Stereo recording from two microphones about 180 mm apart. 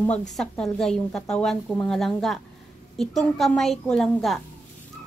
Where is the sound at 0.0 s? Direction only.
5° left (ahead or behind).